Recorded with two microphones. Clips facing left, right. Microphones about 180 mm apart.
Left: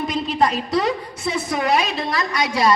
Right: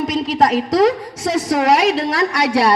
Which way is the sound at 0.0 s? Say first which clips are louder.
Right 4 dB; 90° right.